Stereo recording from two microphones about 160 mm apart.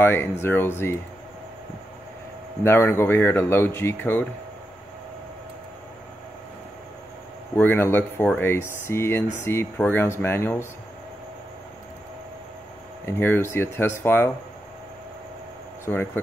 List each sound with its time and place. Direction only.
0.0 s speech: 15° left (ahead or behind)
2.6 s speech: 15° left (ahead or behind)
7.5 s speech: 10° left (ahead or behind)
13.0 s speech: 15° left (ahead or behind)
15.8 s speech: 15° left (ahead or behind)